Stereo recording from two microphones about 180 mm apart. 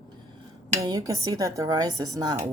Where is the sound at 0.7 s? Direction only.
20° right (ahead or behind).